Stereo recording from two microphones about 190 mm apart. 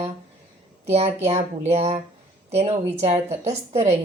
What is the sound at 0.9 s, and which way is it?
Speech, 35° right (ahead or behind).